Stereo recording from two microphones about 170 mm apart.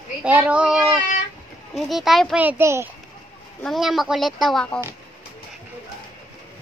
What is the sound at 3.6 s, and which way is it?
Speech, centre (ahead or behind).